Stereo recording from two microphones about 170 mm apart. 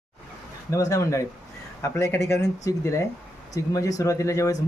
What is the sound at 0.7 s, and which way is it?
Speech, 20° left (ahead or behind).